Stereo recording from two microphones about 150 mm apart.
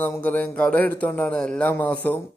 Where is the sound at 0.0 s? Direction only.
10° left (ahead or behind).